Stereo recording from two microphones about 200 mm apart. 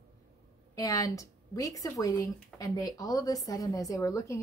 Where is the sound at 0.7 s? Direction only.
15° left (ahead or behind).